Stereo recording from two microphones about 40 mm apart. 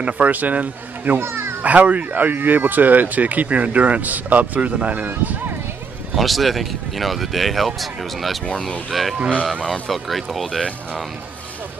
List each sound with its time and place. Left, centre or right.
0.0 s speech: right
1.1 s a child's voice: right
1.6 s speech: right
6.1 s speech: centre
9.2 s speech: right
9.7 s speech: centre